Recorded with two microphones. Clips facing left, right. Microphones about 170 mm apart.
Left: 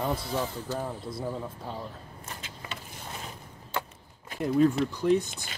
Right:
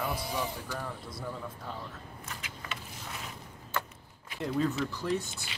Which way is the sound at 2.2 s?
30° left (ahead or behind).